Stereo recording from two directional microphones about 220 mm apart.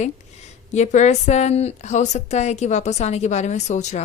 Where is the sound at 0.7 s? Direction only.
30° left (ahead or behind).